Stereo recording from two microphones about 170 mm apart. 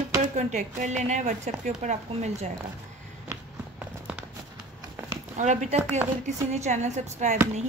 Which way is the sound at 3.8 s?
5° right (ahead or behind).